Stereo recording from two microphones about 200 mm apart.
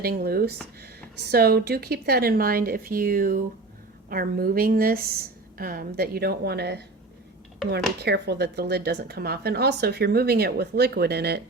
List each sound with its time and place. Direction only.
0.0 s speech: 50° right (ahead or behind)
8.0 s speech: 55° right (ahead or behind)